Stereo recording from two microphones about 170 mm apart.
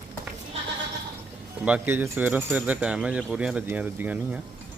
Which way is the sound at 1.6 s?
10° right (ahead or behind).